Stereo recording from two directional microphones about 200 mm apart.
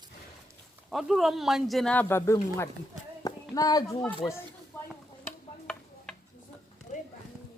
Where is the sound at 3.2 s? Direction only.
20° left (ahead or behind).